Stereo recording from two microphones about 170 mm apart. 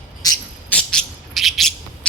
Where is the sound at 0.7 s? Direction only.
5° left (ahead or behind).